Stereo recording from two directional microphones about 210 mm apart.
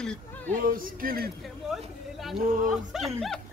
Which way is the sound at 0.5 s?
40° right (ahead or behind).